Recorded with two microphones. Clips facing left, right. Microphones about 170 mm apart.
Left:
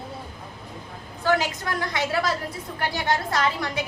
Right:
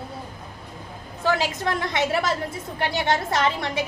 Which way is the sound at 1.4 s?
25° right (ahead or behind).